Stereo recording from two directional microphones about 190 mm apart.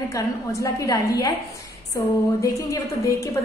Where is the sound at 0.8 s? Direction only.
20° left (ahead or behind).